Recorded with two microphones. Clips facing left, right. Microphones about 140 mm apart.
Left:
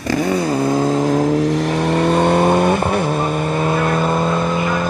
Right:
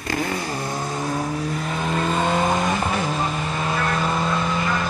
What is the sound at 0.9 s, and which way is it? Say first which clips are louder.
Vehicle: left 10 dB; 90° left.